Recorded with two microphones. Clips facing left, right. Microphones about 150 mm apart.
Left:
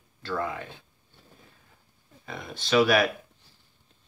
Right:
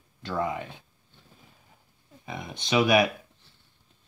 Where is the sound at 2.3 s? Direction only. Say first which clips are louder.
Left 2 dB; 15° right (ahead or behind).